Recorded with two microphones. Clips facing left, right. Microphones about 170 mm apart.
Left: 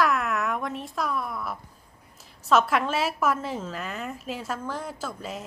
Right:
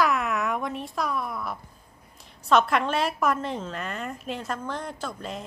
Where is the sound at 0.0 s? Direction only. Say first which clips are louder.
Even; centre (ahead or behind).